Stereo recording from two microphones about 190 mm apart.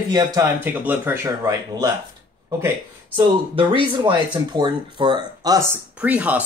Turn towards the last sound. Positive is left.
turn(degrees=-10)  # may be behind; listen again after turning